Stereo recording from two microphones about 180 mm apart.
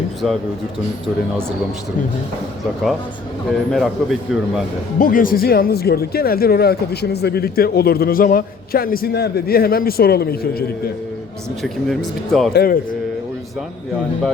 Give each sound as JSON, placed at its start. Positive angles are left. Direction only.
{"t": 0.2, "sound": "a man's voice", "side_deg": 0}
{"t": 3.7, "sound": "a man's voice", "side_deg": 0}
{"t": 4.9, "sound": "speech", "side_deg": 50}
{"t": 11.6, "sound": "a man's voice", "side_deg": 0}
{"t": 12.5, "sound": "speech", "side_deg": 55}